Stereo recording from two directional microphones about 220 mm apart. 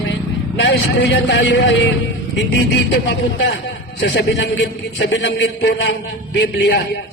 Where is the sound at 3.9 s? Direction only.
50° left (ahead or behind).